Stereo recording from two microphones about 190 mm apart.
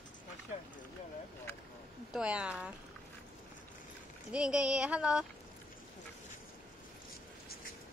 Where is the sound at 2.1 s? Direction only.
5° right (ahead or behind).